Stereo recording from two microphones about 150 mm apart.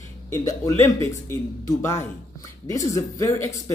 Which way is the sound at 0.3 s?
20° left (ahead or behind).